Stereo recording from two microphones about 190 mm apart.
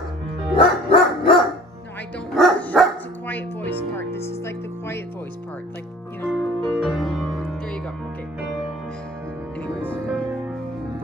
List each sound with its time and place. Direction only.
0.6 s music: 30° left (ahead or behind)
2.3 s music: centre (ahead or behind)
6.2 s music: 5° left (ahead or behind)
8.4 s music: centre (ahead or behind)